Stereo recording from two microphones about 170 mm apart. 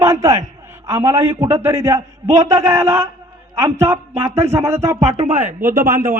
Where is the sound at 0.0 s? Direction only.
20° right (ahead or behind).